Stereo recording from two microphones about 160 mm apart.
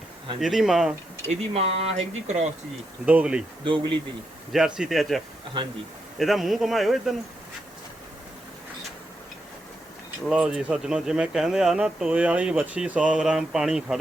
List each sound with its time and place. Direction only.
0.3 s speech: centre (ahead or behind)
1.3 s speech: 40° right (ahead or behind)
3.1 s speech: 10° right (ahead or behind)
3.6 s speech: 30° right (ahead or behind)
4.5 s speech: centre (ahead or behind)
10.2 s speech: 5° right (ahead or behind)